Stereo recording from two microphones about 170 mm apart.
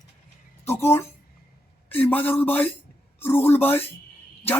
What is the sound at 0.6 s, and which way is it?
A woman's voice, 15° left (ahead or behind).